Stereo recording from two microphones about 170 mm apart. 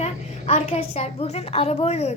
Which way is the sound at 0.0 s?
40° left (ahead or behind).